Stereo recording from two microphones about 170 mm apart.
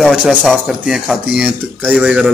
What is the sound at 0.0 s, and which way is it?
Speech, 5° right (ahead or behind).